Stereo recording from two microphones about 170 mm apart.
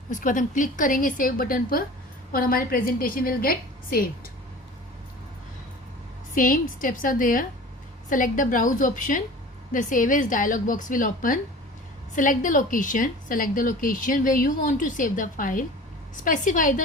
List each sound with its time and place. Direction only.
0.1 s a woman's voice: 50° left (ahead or behind)
6.3 s a woman's voice: 55° left (ahead or behind)